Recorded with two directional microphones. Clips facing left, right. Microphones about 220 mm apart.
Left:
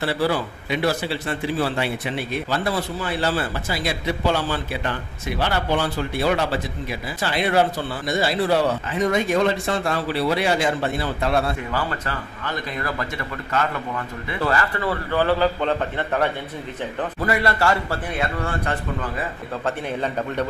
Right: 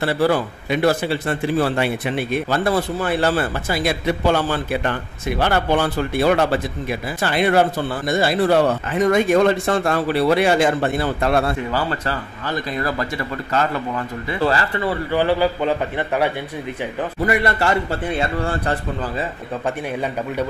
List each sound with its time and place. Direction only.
0.0 s a man's voice: 50° right (ahead or behind)
14.8 s speech: 15° right (ahead or behind)
17.3 s speech: 20° right (ahead or behind)